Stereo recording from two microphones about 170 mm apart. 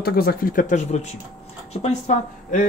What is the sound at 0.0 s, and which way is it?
Speech, 65° left (ahead or behind).